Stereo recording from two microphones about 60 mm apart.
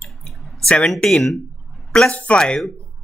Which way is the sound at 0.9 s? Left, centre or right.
Centre.